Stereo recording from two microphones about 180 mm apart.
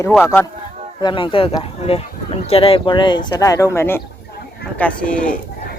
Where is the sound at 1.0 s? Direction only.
25° left (ahead or behind).